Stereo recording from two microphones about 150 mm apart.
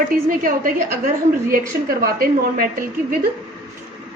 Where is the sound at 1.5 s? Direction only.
75° right (ahead or behind).